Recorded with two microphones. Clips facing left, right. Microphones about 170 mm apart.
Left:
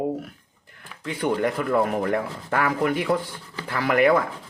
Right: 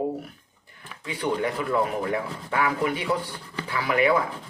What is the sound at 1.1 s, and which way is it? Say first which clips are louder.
Speech: left 3 dB; 50° left (ahead or behind).